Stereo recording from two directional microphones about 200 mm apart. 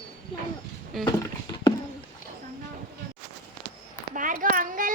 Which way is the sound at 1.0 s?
20° left (ahead or behind).